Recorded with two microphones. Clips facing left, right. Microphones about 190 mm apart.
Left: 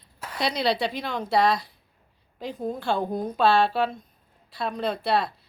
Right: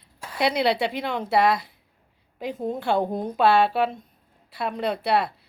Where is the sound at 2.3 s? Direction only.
20° right (ahead or behind).